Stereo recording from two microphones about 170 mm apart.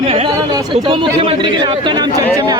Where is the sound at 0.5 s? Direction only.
30° right (ahead or behind).